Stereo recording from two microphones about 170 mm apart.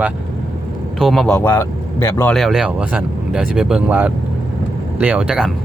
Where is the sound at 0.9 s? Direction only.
Centre (ahead or behind).